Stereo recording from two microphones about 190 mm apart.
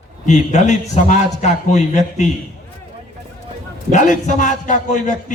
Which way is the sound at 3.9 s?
40° left (ahead or behind).